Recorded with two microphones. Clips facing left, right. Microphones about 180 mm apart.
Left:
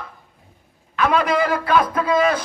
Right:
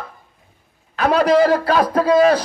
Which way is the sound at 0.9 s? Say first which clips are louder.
Right 4 dB; 40° right (ahead or behind).